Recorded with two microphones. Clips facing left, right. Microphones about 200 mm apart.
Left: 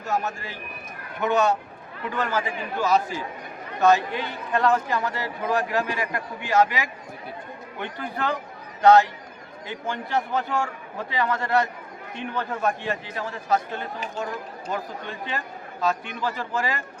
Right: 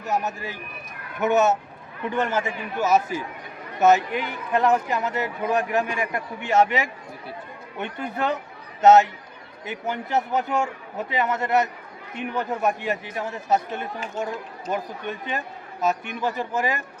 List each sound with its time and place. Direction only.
0.0 s speech: 20° right (ahead or behind)